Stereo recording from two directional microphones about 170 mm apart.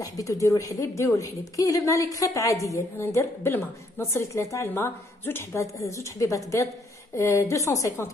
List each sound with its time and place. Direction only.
0.0 s a woman's voice: 20° left (ahead or behind)